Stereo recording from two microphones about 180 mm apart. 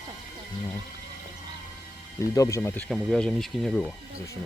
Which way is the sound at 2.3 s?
15° left (ahead or behind).